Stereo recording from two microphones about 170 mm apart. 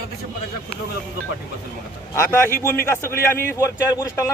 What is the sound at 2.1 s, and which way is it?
A man's voice, 15° left (ahead or behind).